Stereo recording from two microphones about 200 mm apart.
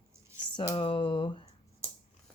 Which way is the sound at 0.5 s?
20° left (ahead or behind).